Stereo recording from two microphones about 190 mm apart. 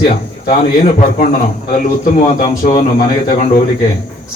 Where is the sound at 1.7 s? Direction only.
45° left (ahead or behind).